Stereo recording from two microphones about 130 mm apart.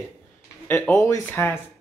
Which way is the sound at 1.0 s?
15° left (ahead or behind).